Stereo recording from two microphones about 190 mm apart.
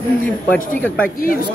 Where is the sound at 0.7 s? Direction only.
5° left (ahead or behind).